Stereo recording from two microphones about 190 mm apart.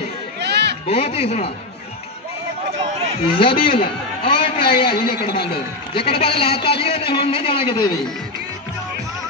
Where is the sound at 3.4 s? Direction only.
30° left (ahead or behind).